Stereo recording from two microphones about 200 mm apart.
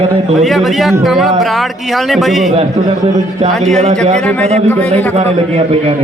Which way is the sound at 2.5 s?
35° right (ahead or behind).